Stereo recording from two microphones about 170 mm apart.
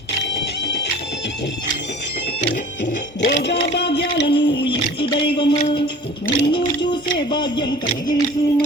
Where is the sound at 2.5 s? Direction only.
55° left (ahead or behind); by 4.2 s 85° left.